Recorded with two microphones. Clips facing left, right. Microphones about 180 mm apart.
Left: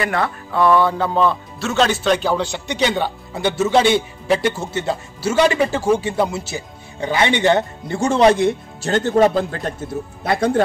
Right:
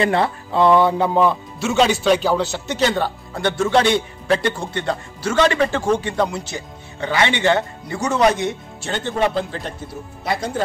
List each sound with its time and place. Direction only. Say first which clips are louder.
0.0 s speech: right 3 dB; 25° right (ahead or behind)
1.6 s speech: right 1 dB; centre (ahead or behind); by 9.8 s 45° left (ahead or behind)
10.2 s speech: left 5 dB; 60° left (ahead or behind)